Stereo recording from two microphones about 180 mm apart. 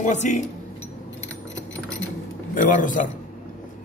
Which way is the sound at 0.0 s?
45° left (ahead or behind).